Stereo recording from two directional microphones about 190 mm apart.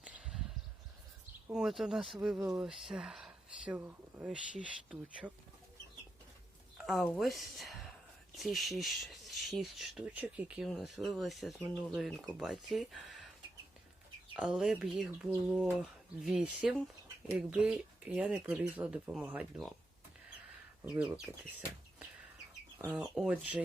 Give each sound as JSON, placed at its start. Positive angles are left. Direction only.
{"t": 0.0, "sound": "a sound", "side_deg": -5}
{"t": 1.5, "sound": "speech", "side_deg": -5}
{"t": 6.7, "sound": "speech", "side_deg": 0}
{"t": 14.3, "sound": "speech", "side_deg": -5}
{"t": 20.8, "sound": "speech", "side_deg": -5}
{"t": 22.9, "sound": "speech", "side_deg": -5}